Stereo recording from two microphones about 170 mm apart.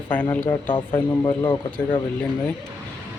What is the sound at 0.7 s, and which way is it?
Speech, 25° left (ahead or behind).